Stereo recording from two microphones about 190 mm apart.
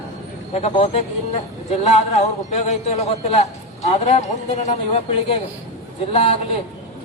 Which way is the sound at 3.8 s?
35° left (ahead or behind).